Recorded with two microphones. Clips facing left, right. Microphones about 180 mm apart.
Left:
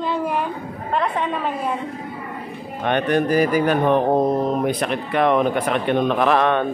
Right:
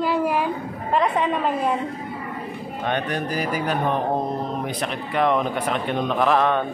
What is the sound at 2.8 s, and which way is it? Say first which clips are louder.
A man's voice: left 6 dB; 65° left (ahead or behind).